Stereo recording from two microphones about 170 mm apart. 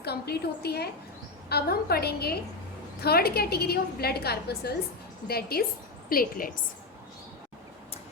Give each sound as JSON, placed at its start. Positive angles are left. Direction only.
{"t": 0.0, "sound": "a woman's voice", "side_deg": 70}